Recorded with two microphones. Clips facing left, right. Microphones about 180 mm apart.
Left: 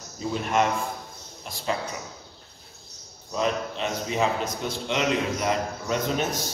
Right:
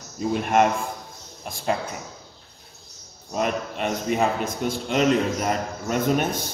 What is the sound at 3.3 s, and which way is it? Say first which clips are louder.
A man's voice: right 1 dB; 55° right (ahead or behind).